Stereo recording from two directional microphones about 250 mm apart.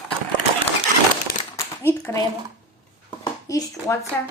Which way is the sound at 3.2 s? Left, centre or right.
Centre.